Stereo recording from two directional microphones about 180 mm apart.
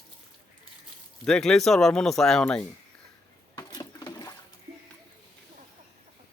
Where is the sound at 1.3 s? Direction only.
5° left (ahead or behind).